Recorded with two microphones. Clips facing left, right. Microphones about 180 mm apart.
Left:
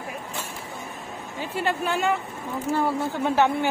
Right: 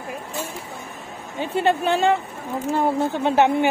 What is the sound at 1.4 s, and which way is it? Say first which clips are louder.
Speech: right 6 dB; 25° right (ahead or behind).